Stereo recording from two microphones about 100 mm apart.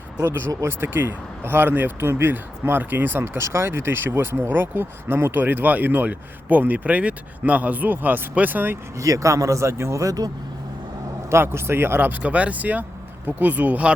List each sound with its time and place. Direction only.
0.2 s speech: 25° right (ahead or behind)
9.0 s speech: 35° right (ahead or behind)
11.3 s speech: 25° right (ahead or behind)